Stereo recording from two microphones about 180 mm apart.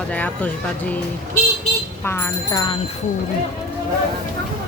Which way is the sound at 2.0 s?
10° left (ahead or behind).